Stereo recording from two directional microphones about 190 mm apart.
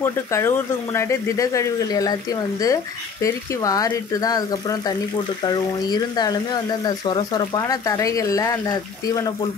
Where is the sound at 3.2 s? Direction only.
20° left (ahead or behind).